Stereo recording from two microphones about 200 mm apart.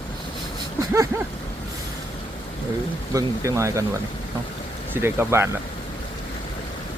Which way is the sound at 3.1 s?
15° right (ahead or behind).